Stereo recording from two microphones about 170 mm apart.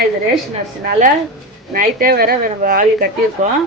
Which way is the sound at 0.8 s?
50° right (ahead or behind).